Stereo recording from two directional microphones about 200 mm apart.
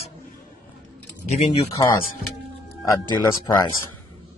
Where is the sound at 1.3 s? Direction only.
30° left (ahead or behind).